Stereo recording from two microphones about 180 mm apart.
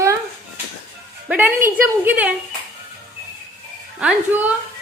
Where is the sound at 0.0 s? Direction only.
15° right (ahead or behind).